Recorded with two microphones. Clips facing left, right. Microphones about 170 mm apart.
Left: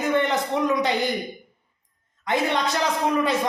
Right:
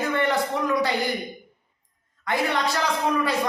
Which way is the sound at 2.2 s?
20° left (ahead or behind).